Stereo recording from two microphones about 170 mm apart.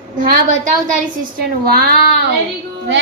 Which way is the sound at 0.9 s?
65° right (ahead or behind).